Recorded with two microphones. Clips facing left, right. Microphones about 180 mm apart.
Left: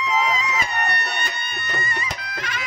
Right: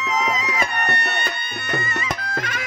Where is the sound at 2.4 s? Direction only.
50° right (ahead or behind).